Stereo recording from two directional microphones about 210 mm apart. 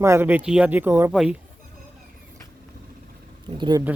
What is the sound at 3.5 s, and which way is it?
Speech, 20° right (ahead or behind).